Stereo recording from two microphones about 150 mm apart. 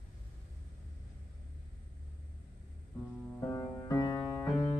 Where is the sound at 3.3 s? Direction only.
15° left (ahead or behind).